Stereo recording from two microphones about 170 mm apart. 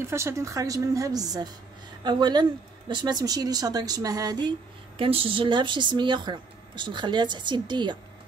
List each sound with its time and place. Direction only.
0.0 s speech: 15° right (ahead or behind)
4.9 s speech: 30° right (ahead or behind)